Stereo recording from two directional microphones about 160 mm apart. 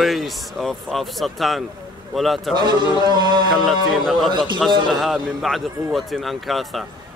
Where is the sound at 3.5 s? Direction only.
Centre (ahead or behind).